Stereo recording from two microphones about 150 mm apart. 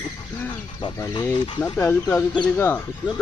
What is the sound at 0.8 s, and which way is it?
Speech, 30° left (ahead or behind).